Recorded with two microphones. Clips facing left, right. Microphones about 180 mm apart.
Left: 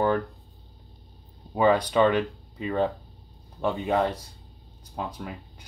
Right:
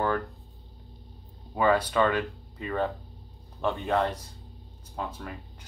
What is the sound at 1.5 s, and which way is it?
Speech, 20° left (ahead or behind).